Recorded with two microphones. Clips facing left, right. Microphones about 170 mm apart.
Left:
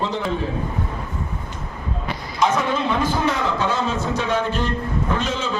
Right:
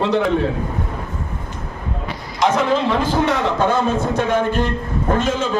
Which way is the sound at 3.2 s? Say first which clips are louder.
Right 4 dB; 65° right (ahead or behind).